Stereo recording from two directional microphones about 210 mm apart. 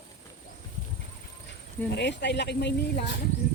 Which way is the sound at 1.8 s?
55° left (ahead or behind).